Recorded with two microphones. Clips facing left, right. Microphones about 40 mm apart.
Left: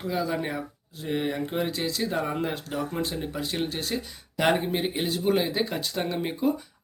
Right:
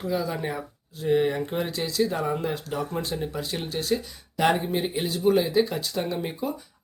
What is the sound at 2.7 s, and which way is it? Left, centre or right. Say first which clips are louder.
Speech: even; centre.